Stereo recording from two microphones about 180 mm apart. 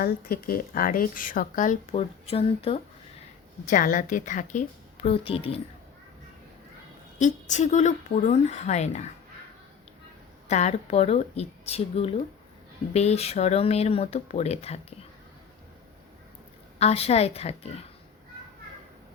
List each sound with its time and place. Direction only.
0.0 s a woman's voice: 55° left (ahead or behind); by 2.8 s 35° left (ahead or behind)
3.7 s a woman's voice: 50° left (ahead or behind); by 5.5 s 30° left (ahead or behind)
7.2 s speech: 40° left (ahead or behind)
10.5 s speech: 40° left (ahead or behind)
16.7 s speech: 35° left (ahead or behind)